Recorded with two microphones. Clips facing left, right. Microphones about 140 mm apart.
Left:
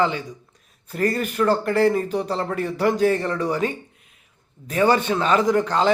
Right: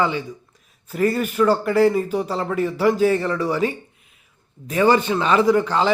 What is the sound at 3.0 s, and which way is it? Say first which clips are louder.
Speech: right 1 dB; 40° left (ahead or behind).